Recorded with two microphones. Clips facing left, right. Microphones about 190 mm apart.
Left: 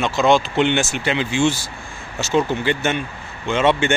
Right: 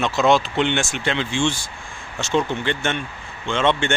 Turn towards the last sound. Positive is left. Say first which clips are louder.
# left 3 dB
turn(degrees=5)  # may be behind; listen again after turning